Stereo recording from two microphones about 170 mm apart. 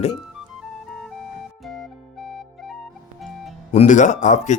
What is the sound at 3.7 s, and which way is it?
Speech, 45° left (ahead or behind).